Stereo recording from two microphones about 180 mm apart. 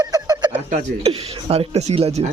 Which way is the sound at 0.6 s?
35° right (ahead or behind).